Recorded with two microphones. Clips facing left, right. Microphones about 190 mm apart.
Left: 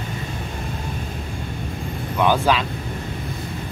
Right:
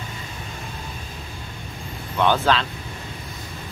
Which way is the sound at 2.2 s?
10° left (ahead or behind).